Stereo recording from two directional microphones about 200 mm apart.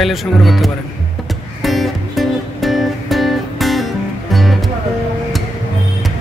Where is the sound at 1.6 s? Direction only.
Centre (ahead or behind).